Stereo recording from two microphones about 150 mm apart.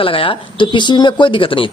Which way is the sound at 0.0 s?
35° left (ahead or behind).